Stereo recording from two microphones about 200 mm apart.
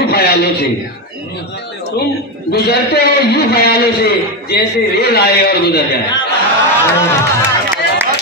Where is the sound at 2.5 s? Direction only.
55° left (ahead or behind).